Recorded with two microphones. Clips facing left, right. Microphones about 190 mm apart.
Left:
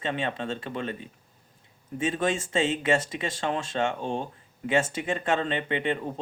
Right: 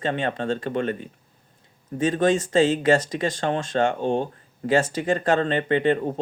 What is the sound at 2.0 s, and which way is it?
Speech, 35° right (ahead or behind).